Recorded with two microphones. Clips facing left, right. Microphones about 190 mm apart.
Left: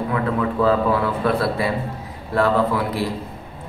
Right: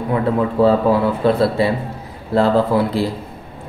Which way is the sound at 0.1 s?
30° right (ahead or behind).